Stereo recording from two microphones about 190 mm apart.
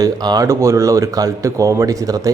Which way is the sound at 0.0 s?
20° right (ahead or behind).